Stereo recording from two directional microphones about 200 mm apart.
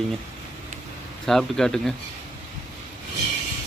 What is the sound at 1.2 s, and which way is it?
Speech, centre (ahead or behind).